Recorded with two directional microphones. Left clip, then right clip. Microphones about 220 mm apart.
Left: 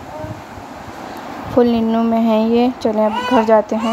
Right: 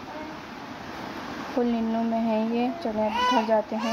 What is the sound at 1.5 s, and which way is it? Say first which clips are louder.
Speech: left 12 dB; 25° left (ahead or behind).